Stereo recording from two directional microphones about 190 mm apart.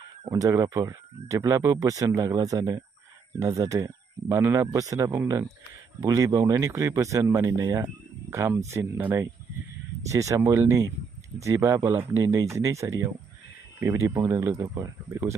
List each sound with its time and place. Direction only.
0.3 s speech: 20° right (ahead or behind)